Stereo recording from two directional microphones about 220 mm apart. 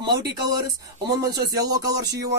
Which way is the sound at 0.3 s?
20° right (ahead or behind).